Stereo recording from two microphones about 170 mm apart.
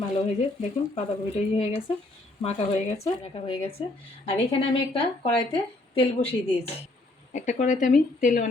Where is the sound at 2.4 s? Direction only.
40° left (ahead or behind).